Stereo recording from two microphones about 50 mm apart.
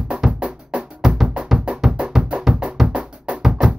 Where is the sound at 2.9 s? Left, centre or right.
Right.